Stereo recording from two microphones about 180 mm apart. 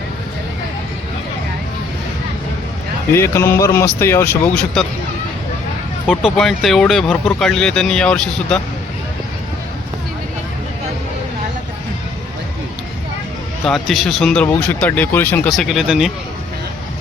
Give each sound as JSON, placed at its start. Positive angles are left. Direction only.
{"t": 3.1, "sound": "speech", "side_deg": 15}
{"t": 6.1, "sound": "speech", "side_deg": 0}
{"t": 13.7, "sound": "speech", "side_deg": 0}